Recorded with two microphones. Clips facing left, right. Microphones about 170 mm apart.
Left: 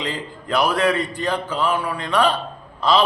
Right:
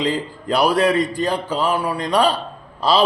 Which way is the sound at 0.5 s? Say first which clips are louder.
Right 3 dB; 35° right (ahead or behind).